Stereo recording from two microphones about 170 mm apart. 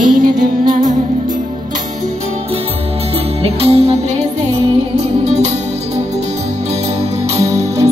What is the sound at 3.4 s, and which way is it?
Music, 35° right (ahead or behind).